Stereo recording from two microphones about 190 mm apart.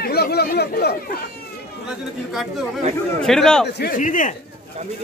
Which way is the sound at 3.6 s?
60° left (ahead or behind).